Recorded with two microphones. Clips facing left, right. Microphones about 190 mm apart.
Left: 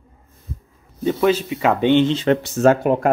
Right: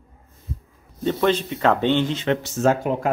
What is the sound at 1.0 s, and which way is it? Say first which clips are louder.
Speech: left 3 dB; 5° left (ahead or behind).